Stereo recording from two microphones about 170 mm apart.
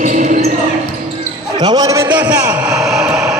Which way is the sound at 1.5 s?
25° right (ahead or behind).